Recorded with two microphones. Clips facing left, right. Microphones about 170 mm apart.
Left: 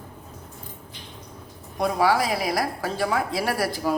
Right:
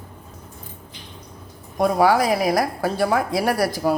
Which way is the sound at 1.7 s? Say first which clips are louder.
Right 4 dB; 45° right (ahead or behind).